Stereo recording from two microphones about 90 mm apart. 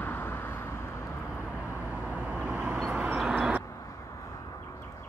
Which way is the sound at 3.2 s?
10° right (ahead or behind).